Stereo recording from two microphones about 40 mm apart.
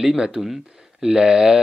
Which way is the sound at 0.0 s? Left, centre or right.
Centre.